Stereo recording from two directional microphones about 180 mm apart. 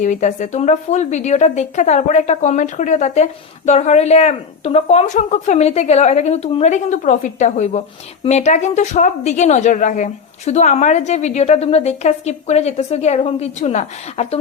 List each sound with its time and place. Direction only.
0.0 s a woman's voice: 45° left (ahead or behind)